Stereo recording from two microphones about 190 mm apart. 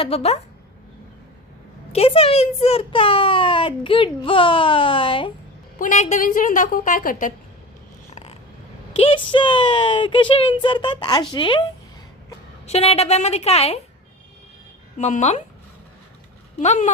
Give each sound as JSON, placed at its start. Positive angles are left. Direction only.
{"t": 0.0, "sound": "a woman's voice", "side_deg": 30}
{"t": 1.9, "sound": "a child's voice", "side_deg": 30}
{"t": 5.8, "sound": "a woman's voice", "side_deg": 40}
{"t": 8.1, "sound": "a sound", "side_deg": 35}
{"t": 9.0, "sound": "a child's voice", "side_deg": 25}
{"t": 12.6, "sound": "a woman's voice", "side_deg": 35}
{"t": 14.9, "sound": "a woman's voice", "side_deg": 40}
{"t": 16.6, "sound": "a woman's voice", "side_deg": 40}